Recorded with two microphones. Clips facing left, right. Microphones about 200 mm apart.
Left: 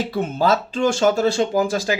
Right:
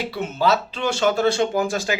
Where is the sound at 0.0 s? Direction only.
50° left (ahead or behind).